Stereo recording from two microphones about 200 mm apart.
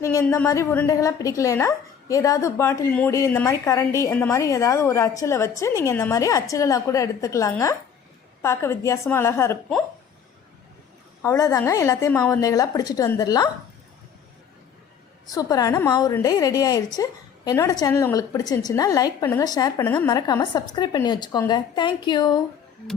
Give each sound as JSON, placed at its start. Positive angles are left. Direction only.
{"t": 0.0, "sound": "a woman's voice", "side_deg": 15}
{"t": 11.2, "sound": "a woman's voice", "side_deg": 15}
{"t": 15.3, "sound": "a woman's voice", "side_deg": 20}